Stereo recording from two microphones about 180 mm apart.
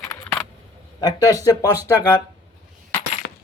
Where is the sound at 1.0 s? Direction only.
20° left (ahead or behind).